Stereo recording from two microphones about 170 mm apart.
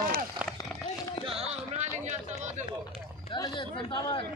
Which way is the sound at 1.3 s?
35° right (ahead or behind).